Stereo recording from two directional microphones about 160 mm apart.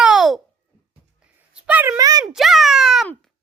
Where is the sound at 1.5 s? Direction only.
5° right (ahead or behind).